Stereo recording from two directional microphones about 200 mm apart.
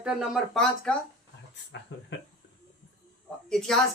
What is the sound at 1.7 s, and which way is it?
Speech, 65° left (ahead or behind).